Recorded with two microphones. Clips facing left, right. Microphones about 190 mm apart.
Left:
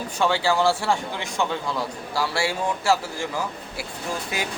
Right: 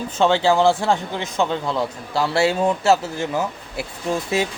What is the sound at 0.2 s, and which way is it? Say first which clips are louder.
A man's voice: right 5 dB; 20° right (ahead or behind).